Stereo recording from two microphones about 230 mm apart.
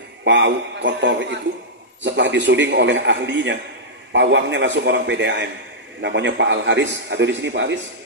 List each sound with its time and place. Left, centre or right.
0.2 s a man's voice: right